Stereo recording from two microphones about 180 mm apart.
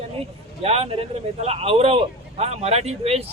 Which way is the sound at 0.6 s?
35° right (ahead or behind).